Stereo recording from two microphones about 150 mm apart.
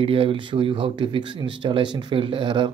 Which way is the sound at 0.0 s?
35° right (ahead or behind).